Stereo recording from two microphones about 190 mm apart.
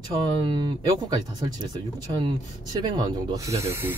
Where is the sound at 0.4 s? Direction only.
25° right (ahead or behind).